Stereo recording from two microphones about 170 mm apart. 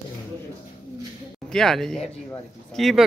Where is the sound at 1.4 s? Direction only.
Centre (ahead or behind).